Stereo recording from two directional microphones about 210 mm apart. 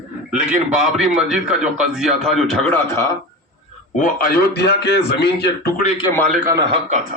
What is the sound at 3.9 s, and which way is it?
A man's voice, 45° left (ahead or behind).